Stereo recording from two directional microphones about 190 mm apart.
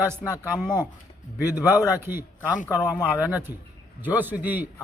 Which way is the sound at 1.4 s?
10° right (ahead or behind).